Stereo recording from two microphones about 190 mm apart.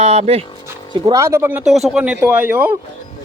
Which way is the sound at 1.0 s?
15° right (ahead or behind).